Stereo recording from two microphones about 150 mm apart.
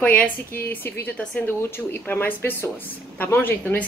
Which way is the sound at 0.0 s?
10° left (ahead or behind).